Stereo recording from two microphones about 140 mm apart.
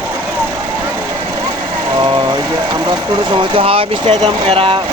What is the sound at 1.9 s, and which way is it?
Speech, 35° right (ahead or behind).